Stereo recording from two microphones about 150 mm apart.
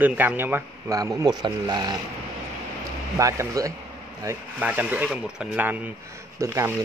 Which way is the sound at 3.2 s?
20° right (ahead or behind).